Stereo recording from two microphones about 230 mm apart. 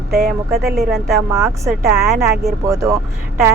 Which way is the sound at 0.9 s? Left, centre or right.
Centre.